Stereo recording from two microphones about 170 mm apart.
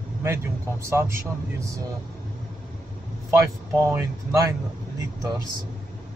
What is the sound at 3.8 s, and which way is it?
Speech, 15° right (ahead or behind).